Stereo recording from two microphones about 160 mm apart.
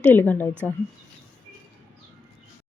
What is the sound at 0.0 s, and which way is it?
Speech, 10° left (ahead or behind).